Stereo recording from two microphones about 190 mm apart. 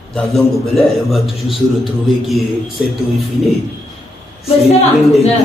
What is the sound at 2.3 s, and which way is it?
Music, centre (ahead or behind).